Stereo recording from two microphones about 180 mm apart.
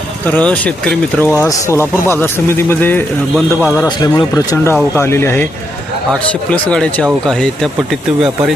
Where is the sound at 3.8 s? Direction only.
25° left (ahead or behind).